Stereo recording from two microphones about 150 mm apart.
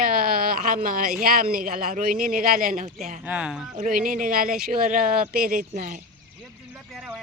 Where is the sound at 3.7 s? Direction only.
60° right (ahead or behind).